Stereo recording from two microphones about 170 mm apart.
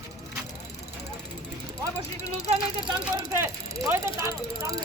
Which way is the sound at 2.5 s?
30° right (ahead or behind).